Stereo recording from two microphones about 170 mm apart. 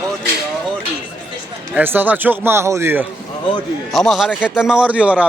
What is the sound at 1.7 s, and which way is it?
A man's voice, 10° right (ahead or behind).